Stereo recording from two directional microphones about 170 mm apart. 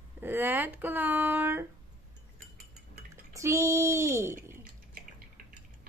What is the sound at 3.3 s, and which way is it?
Child singing, 15° right (ahead or behind).